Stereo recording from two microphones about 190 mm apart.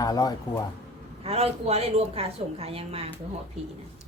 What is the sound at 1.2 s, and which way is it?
A woman's voice, 30° right (ahead or behind).